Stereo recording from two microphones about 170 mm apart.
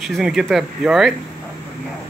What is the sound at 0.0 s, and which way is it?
Speech, centre (ahead or behind).